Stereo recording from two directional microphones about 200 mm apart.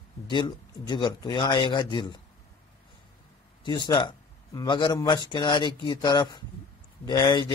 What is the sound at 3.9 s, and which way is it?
Speech, 20° left (ahead or behind).